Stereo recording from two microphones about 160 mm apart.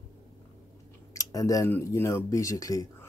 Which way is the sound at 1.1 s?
20° left (ahead or behind).